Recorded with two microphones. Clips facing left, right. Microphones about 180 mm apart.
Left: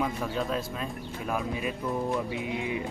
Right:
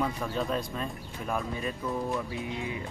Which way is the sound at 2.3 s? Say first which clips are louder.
Left 3 dB; 20° left (ahead or behind).